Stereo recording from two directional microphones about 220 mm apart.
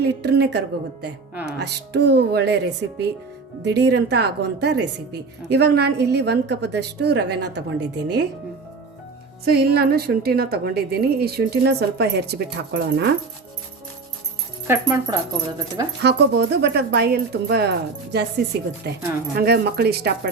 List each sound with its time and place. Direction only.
0.0 s a woman's voice: 50° right (ahead or behind)
9.4 s a woman's voice: 45° right (ahead or behind)
14.7 s speech: 15° right (ahead or behind)
16.0 s a woman's voice: 50° right (ahead or behind)